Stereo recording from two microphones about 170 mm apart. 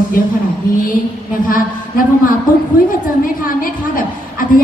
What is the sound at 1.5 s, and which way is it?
Speech, 55° left (ahead or behind).